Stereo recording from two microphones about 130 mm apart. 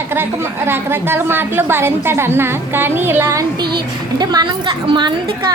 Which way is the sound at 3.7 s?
35° right (ahead or behind).